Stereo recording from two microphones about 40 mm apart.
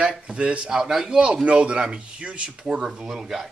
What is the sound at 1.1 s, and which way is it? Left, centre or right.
A man's voice, right.